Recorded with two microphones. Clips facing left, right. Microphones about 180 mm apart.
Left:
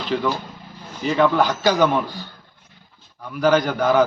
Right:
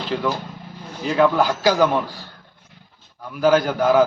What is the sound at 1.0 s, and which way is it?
A man's voice, 5° right (ahead or behind).